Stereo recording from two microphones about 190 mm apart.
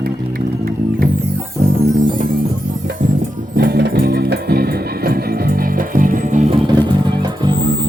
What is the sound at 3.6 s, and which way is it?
Music, 60° right (ahead or behind).